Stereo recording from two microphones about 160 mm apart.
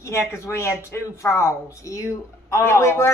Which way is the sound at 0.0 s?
15° left (ahead or behind).